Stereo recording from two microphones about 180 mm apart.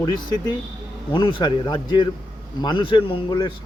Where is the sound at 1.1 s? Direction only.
25° left (ahead or behind).